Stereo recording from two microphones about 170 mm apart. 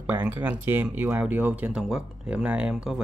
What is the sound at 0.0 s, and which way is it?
Speech, 10° right (ahead or behind).